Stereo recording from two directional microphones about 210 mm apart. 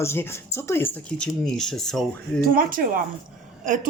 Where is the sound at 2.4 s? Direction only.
40° right (ahead or behind).